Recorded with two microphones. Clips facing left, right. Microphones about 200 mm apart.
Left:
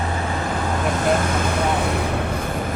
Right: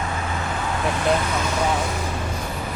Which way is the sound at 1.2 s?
50° left (ahead or behind).